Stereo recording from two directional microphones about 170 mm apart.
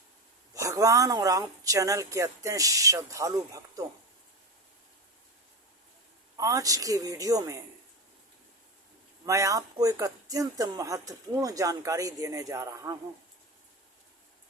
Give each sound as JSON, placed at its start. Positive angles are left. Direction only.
{"t": 0.5, "sound": "speech", "side_deg": -20}
{"t": 6.3, "sound": "speech", "side_deg": -20}
{"t": 9.2, "sound": "speech", "side_deg": -20}